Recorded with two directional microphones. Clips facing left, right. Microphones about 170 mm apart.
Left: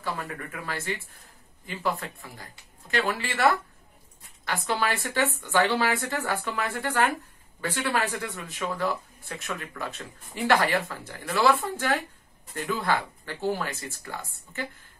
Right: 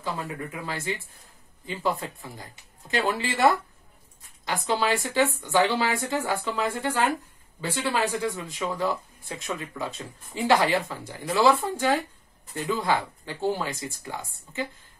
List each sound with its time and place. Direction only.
0.0 s speech: 20° right (ahead or behind)
4.5 s speech: 15° right (ahead or behind)